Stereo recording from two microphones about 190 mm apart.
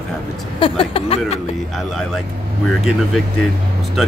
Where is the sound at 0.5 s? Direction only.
30° left (ahead or behind).